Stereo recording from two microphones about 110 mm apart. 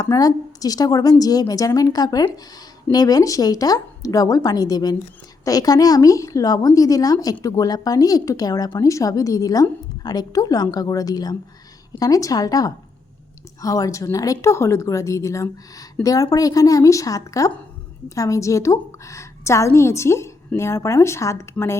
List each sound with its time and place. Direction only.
0.0 s speech: 35° left (ahead or behind)